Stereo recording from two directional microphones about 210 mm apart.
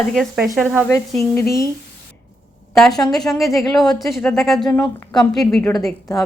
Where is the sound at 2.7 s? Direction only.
Centre (ahead or behind).